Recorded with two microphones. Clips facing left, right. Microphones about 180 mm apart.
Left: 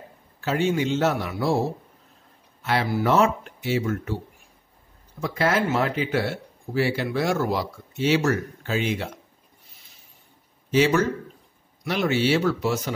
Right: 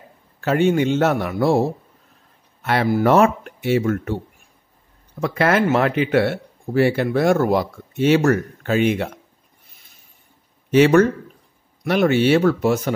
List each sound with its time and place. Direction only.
0.4 s speech: 55° right (ahead or behind)
2.6 s speech: 55° right (ahead or behind)
5.2 s speech: 65° right (ahead or behind)
10.7 s speech: 60° right (ahead or behind)